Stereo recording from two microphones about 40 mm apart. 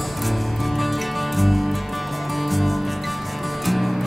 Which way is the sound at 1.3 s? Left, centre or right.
Centre.